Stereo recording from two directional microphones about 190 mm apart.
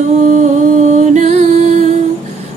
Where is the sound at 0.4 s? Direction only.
40° right (ahead or behind).